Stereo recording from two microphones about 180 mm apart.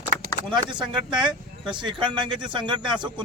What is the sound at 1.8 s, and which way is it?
Speech, 25° right (ahead or behind).